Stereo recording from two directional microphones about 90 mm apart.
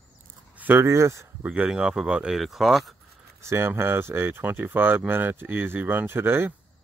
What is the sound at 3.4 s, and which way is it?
Speech, 30° right (ahead or behind).